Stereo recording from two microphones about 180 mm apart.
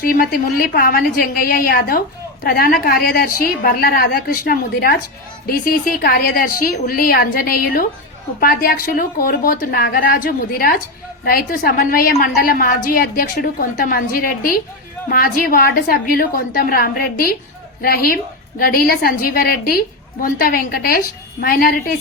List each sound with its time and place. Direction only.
0.0 s a woman's voice: 55° left (ahead or behind)